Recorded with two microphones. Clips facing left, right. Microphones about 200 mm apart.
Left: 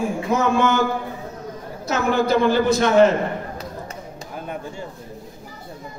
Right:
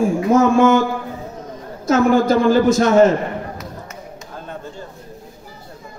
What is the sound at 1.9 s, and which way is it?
A man's voice, 45° right (ahead or behind).